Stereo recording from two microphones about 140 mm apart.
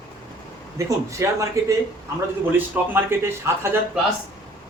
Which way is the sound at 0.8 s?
20° right (ahead or behind).